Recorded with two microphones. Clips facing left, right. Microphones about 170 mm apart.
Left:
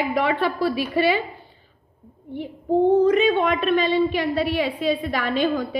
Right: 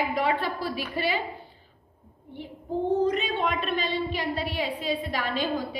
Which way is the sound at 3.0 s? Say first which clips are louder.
Left 8 dB; 60° left (ahead or behind).